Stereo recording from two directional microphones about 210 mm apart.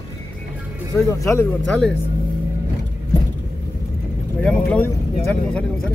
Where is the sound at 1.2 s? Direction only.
15° left (ahead or behind).